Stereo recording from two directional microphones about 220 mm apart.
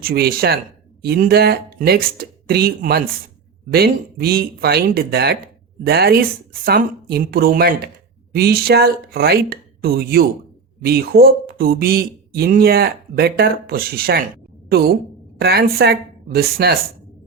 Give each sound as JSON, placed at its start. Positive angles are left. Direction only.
{"t": 0.0, "sound": "a woman's voice", "side_deg": -45}